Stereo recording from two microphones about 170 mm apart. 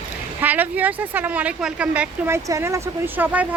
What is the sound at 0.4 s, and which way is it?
Speech, 10° right (ahead or behind).